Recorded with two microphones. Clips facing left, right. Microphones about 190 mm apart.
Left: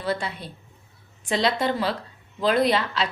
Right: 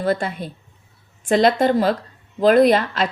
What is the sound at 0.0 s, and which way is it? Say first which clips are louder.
A woman's voice: right 6 dB; 50° right (ahead or behind).